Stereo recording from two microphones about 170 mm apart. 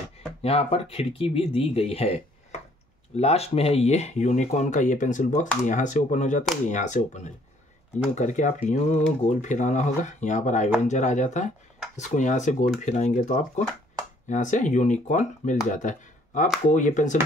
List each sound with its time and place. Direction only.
0.4 s speech: 35° left (ahead or behind)
8.1 s speech: 45° left (ahead or behind)
15.8 s a sound: 50° left (ahead or behind)
16.6 s speech: 50° left (ahead or behind)